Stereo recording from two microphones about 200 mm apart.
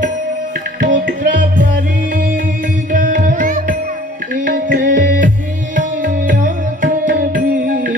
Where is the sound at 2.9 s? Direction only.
40° right (ahead or behind).